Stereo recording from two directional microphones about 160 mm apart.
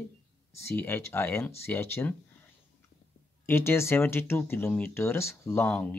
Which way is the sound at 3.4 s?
15° left (ahead or behind).